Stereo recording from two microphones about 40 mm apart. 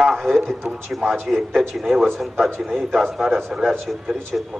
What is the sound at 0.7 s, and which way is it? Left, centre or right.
Speech, right.